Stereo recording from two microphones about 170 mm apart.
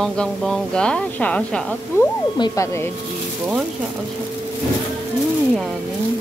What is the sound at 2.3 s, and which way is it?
Speech, 20° left (ahead or behind).